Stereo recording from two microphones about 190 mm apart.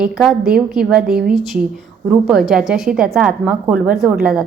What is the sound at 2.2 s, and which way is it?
A woman's voice, 5° right (ahead or behind).